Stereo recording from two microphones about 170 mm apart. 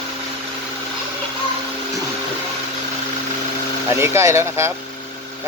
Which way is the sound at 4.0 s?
15° right (ahead or behind).